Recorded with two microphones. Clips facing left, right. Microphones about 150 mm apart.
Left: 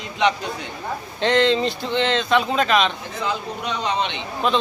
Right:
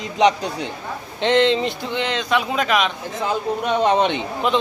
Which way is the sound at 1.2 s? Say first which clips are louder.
Right 1 dB; 20° right (ahead or behind).